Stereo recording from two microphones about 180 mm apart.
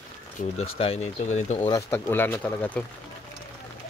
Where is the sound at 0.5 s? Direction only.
35° left (ahead or behind).